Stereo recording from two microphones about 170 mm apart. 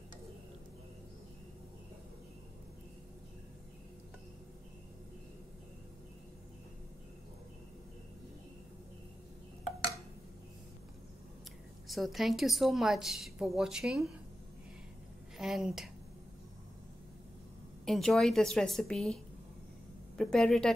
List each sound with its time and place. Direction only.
11.9 s a woman's voice: centre (ahead or behind)
15.3 s a woman's voice: centre (ahead or behind)
17.8 s a woman's voice: centre (ahead or behind)
20.2 s a woman's voice: 5° left (ahead or behind)